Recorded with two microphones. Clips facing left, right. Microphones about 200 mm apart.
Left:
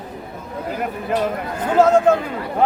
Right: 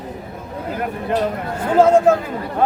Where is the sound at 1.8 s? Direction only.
10° right (ahead or behind).